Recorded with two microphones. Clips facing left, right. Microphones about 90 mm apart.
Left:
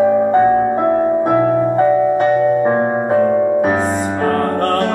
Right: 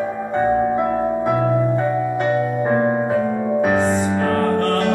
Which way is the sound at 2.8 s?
35° left (ahead or behind).